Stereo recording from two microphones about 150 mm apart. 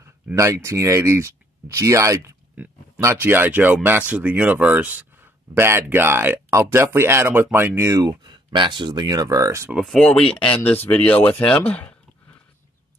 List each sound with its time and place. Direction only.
0.0 s speech: 20° right (ahead or behind)
9.8 s speech: centre (ahead or behind)